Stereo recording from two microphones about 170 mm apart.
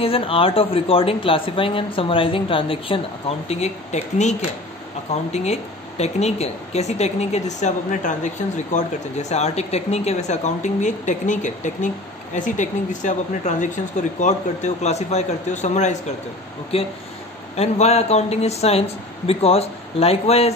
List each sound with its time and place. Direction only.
0.0 s speech: 35° left (ahead or behind)
9.3 s a woman's voice: 40° left (ahead or behind)